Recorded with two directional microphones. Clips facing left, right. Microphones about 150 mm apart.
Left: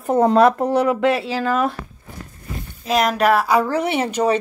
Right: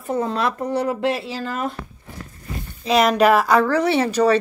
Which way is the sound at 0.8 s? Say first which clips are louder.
Left 3 dB; 90° left.